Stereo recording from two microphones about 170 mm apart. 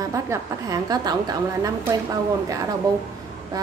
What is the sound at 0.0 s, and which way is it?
A woman's voice, 20° right (ahead or behind).